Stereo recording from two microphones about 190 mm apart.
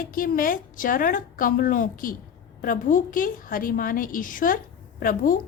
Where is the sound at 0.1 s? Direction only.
45° left (ahead or behind).